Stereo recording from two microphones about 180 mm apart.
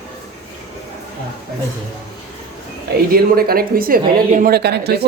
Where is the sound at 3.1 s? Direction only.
55° right (ahead or behind).